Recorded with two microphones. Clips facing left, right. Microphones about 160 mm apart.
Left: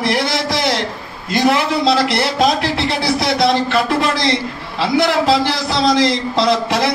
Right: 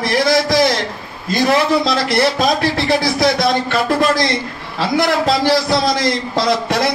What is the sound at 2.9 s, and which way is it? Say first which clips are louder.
A man's voice: right 3 dB; 65° left (ahead or behind).